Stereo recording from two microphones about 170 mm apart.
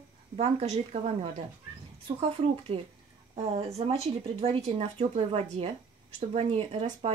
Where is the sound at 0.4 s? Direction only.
40° right (ahead or behind).